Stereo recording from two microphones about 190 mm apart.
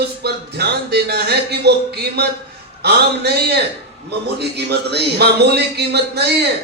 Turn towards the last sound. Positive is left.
turn(degrees=-60)  # may be behind; listen again after turning